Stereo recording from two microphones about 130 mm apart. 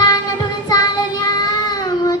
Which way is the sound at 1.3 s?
30° left (ahead or behind).